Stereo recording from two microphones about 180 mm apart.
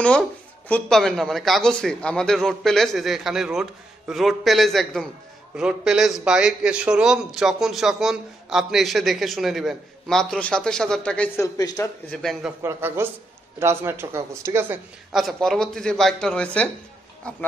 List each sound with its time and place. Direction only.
0.7 s a man's voice: 5° left (ahead or behind)
11.5 s speech: 20° left (ahead or behind)
12.1 s a man's voice: centre (ahead or behind)
12.6 s a man's voice: 15° right (ahead or behind)
15.1 s a man's voice: centre (ahead or behind)